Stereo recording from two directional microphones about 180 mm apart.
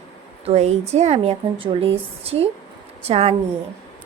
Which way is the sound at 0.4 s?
35° right (ahead or behind).